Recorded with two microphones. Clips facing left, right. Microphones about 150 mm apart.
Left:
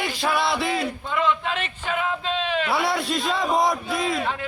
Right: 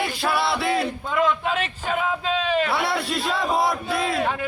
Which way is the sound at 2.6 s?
Centre (ahead or behind).